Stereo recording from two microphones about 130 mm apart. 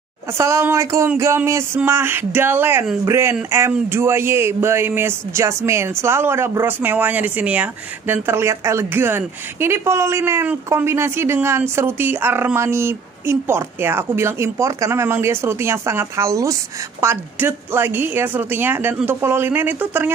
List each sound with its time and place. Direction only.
0.4 s speech: 20° right (ahead or behind)